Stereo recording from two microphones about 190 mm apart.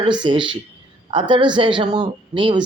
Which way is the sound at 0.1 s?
25° right (ahead or behind).